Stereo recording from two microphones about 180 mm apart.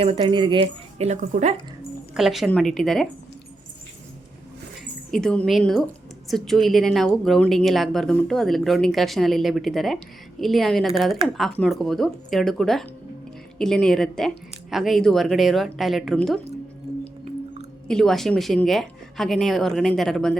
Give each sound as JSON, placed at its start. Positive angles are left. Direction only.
{"t": 0.0, "sound": "speech", "side_deg": -30}
{"t": 2.1, "sound": "a woman's voice", "side_deg": 0}
{"t": 5.1, "sound": "a woman's voice", "side_deg": 5}
{"t": 16.9, "sound": "singing bowl", "side_deg": -30}
{"t": 17.8, "sound": "a woman's voice", "side_deg": 5}